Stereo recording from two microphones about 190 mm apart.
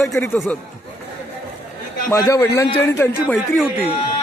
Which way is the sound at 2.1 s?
15° left (ahead or behind).